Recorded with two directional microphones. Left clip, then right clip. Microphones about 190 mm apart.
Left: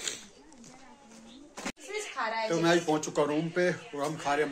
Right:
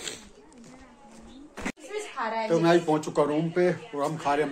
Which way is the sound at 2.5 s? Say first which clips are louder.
Right 5 dB; centre (ahead or behind).